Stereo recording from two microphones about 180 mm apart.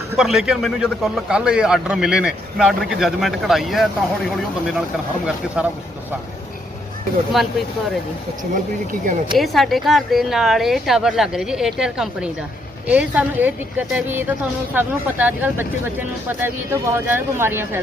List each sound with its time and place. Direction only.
0.2 s a man's voice: centre (ahead or behind)
5.6 s a woman's voice: 5° right (ahead or behind)
7.3 s a man's voice: centre (ahead or behind)
8.5 s speech: 50° right (ahead or behind)
9.4 s a man's voice: centre (ahead or behind)